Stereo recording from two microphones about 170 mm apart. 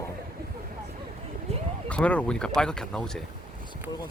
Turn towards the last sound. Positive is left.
turn(degrees=5)  # may be behind; listen again after turning